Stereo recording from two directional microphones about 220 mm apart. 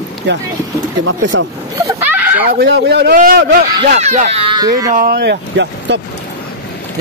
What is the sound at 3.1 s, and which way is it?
Speech, 40° right (ahead or behind).